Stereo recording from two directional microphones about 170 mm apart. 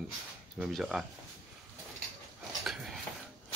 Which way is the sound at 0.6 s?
Centre (ahead or behind).